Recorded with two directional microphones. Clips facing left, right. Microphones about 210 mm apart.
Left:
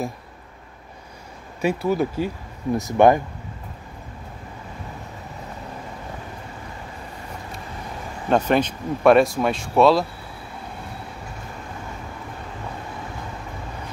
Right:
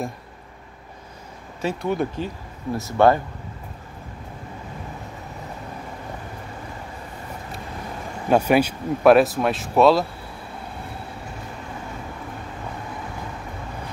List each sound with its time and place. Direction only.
1.6 s speech: 5° left (ahead or behind)
2.7 s speech: 15° left (ahead or behind)
8.3 s speech: 10° right (ahead or behind)